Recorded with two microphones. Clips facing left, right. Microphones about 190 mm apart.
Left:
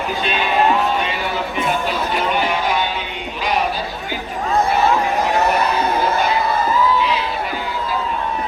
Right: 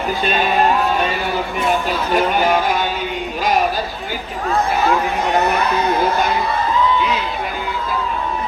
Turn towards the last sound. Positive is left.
turn(degrees=5)  # may be behind; listen again after turning